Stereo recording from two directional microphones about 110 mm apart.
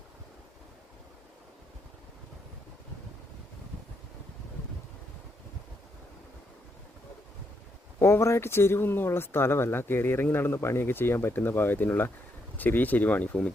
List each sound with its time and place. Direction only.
7.9 s speech: 25° left (ahead or behind)